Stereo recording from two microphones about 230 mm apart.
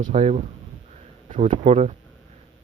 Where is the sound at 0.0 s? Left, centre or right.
Right.